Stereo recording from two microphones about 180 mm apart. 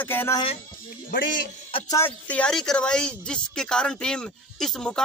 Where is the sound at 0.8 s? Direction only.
50° left (ahead or behind).